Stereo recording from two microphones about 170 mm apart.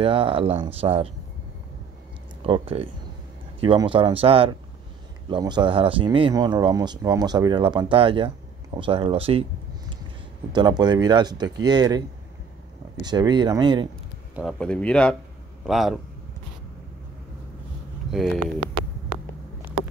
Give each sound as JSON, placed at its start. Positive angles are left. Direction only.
{"t": 0.0, "sound": "speech", "side_deg": -30}
{"t": 2.4, "sound": "speech", "side_deg": -35}
{"t": 13.0, "sound": "speech", "side_deg": -25}
{"t": 14.3, "sound": "speech", "side_deg": 5}
{"t": 18.1, "sound": "speech", "side_deg": 0}